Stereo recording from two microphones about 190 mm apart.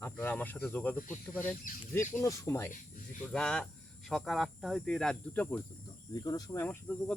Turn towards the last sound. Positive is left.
turn(degrees=10)  # may be behind; listen again after turning